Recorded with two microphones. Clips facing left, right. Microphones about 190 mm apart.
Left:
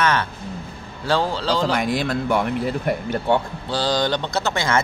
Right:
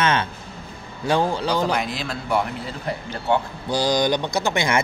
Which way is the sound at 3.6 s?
15° right (ahead or behind).